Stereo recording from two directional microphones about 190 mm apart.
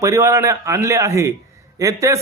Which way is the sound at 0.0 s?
15° right (ahead or behind).